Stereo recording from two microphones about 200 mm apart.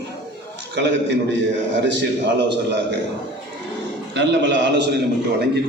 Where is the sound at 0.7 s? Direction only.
60° right (ahead or behind).